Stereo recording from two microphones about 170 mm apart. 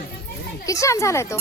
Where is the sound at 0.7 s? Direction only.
20° left (ahead or behind).